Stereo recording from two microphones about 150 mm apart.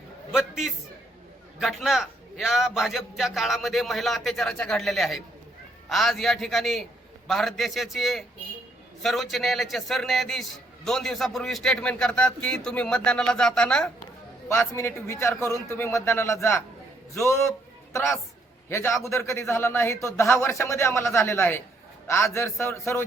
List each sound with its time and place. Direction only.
0.3 s a man's voice: 5° right (ahead or behind)
14.4 s a man's voice: 15° left (ahead or behind)